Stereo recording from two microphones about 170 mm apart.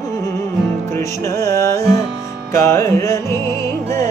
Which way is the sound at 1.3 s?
20° left (ahead or behind).